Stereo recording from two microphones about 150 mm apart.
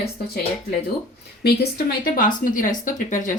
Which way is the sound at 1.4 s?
90° left.